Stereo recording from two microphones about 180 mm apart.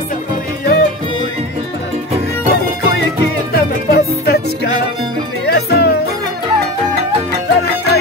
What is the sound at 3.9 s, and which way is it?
Music, 60° left (ahead or behind).